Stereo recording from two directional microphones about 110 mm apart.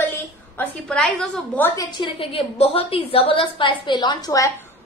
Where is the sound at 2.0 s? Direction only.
55° left (ahead or behind); by 4.5 s 35° left (ahead or behind).